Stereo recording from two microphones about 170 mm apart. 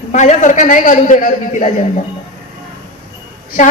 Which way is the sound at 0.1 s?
45° left (ahead or behind).